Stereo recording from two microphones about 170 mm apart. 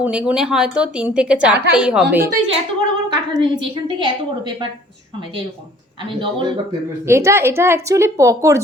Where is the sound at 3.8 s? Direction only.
30° right (ahead or behind).